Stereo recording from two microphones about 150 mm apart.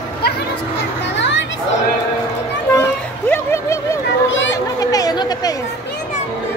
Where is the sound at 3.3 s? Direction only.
15° left (ahead or behind).